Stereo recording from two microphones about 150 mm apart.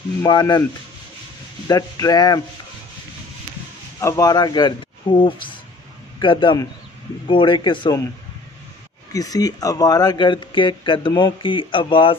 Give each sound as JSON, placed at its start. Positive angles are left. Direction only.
{"t": 0.2, "sound": "speech", "side_deg": 25}
{"t": 1.7, "sound": "speech", "side_deg": 25}
{"t": 4.0, "sound": "speech", "side_deg": 25}
{"t": 9.1, "sound": "speech", "side_deg": 25}